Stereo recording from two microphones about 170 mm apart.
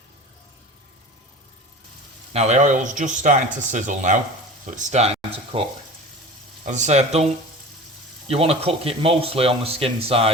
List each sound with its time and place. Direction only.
2.3 s speech: 40° right (ahead or behind)
6.7 s speech: 45° right (ahead or behind)
8.3 s speech: 35° right (ahead or behind)